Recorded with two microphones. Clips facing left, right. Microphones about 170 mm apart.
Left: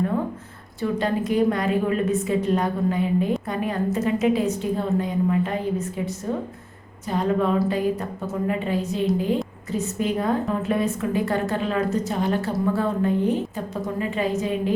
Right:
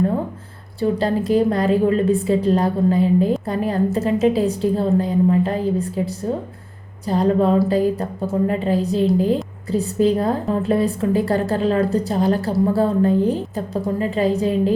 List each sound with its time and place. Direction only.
0.8 s a woman's voice: 35° right (ahead or behind)